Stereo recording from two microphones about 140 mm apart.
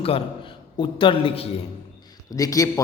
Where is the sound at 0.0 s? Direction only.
40° left (ahead or behind).